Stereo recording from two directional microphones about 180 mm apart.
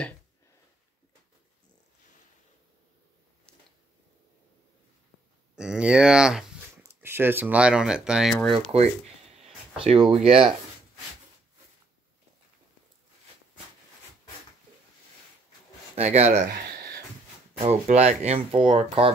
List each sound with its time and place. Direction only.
5.6 s speech: 5° right (ahead or behind)
10.0 s speech: 35° right (ahead or behind)
15.9 s speech: 40° right (ahead or behind)
16.6 s a sound: 55° right (ahead or behind)
17.6 s speech: 35° right (ahead or behind)